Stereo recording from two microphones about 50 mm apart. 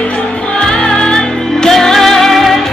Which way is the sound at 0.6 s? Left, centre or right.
Centre.